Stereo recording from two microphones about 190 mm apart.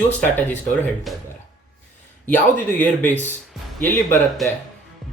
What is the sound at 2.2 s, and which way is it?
Speech, 10° left (ahead or behind).